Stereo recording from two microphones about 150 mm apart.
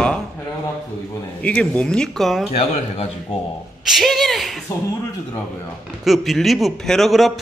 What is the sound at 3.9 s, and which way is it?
Speech, centre (ahead or behind).